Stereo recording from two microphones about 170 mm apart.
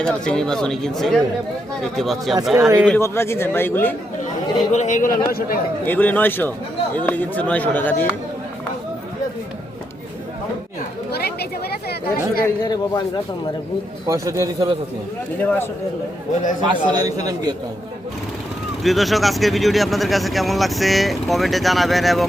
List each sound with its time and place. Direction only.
0.0 s speech: 5° left (ahead or behind)
2.6 s speech: 20° right (ahead or behind)
3.0 s speech: 15° left (ahead or behind)
4.7 s speech: 45° left (ahead or behind)
5.8 s speech: 10° left (ahead or behind)
11.1 s chatter: 70° left (ahead or behind)
12.6 s a man's voice: 25° left (ahead or behind)
14.1 s speech: 20° right (ahead or behind)
15.4 s speech: 15° left (ahead or behind)
16.6 s speech: 25° right (ahead or behind)
18.8 s speech: centre (ahead or behind)